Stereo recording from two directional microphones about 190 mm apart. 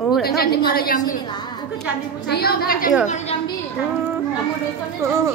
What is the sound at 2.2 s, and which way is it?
Speech, 55° left (ahead or behind).